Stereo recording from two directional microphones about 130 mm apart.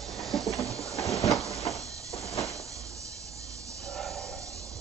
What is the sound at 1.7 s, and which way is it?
Train, 25° right (ahead or behind).